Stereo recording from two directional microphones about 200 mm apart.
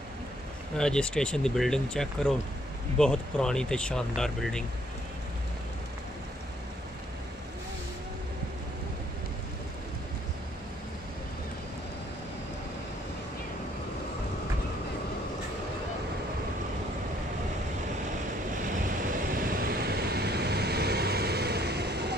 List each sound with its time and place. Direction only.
0.7 s speech: 5° left (ahead or behind)
18.8 s vehicle: 45° right (ahead or behind)